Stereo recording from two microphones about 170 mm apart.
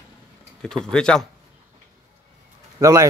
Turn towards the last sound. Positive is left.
turn(degrees=-20)  # may be behind; listen again after turning